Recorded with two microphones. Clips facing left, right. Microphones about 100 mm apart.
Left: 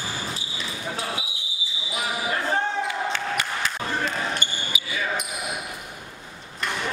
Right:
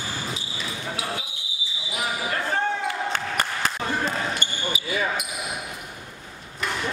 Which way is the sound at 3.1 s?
45° right (ahead or behind).